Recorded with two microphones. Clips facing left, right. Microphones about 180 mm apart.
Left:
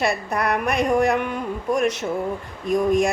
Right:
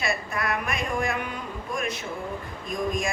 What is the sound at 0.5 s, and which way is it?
Speech, 65° left (ahead or behind).